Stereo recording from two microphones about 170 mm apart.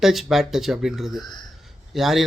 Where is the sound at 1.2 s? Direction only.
25° left (ahead or behind).